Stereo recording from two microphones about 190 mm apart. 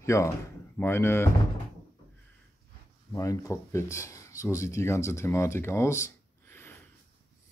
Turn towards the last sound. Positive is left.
turn(degrees=15)  # may be behind; listen again after turning